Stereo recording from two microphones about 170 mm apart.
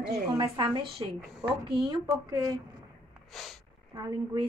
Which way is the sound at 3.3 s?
Centre (ahead or behind).